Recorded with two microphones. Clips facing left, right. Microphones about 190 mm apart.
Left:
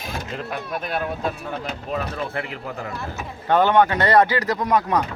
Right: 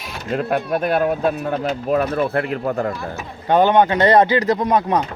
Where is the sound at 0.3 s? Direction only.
50° right (ahead or behind).